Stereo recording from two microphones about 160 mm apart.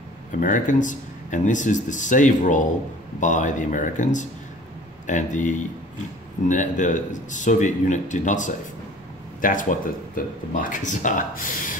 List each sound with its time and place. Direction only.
0.4 s speech: 50° left (ahead or behind)